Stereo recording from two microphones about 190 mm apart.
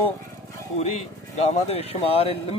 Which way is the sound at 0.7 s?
35° left (ahead or behind).